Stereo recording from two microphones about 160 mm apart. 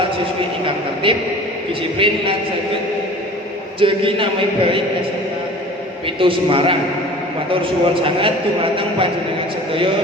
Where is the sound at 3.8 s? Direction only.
35° right (ahead or behind).